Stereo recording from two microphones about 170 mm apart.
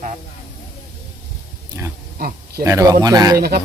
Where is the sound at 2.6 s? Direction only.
20° right (ahead or behind).